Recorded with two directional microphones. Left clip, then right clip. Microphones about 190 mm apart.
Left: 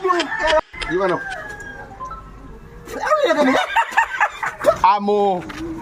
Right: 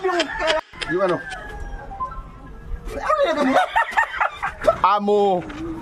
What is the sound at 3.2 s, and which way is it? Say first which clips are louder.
Snicker: left 3 dB; 10° right (ahead or behind).